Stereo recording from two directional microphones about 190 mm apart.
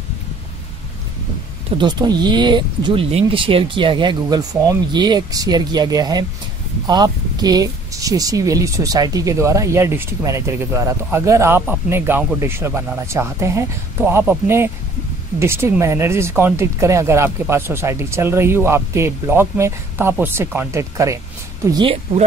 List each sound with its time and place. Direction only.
1.8 s speech: 20° right (ahead or behind)